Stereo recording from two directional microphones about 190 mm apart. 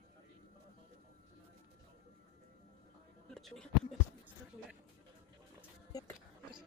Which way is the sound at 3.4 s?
Centre (ahead or behind).